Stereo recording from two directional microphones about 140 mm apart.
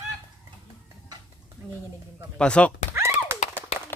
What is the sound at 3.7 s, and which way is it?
Clapping, 45° left (ahead or behind).